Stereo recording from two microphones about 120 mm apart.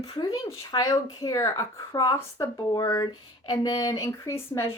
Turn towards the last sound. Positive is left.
turn(degrees=25)  # may be behind; listen again after turning